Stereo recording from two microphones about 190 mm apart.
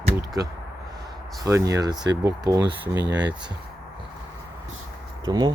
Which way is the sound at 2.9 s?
65° right (ahead or behind).